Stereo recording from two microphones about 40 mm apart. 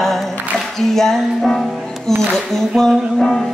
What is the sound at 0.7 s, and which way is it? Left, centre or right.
Music, centre.